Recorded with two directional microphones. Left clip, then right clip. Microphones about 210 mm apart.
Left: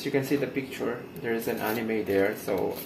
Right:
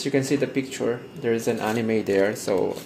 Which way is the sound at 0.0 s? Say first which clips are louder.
Right 4 dB; 50° right (ahead or behind).